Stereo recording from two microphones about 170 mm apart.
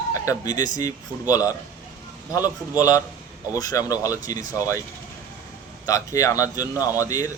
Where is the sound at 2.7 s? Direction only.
20° left (ahead or behind).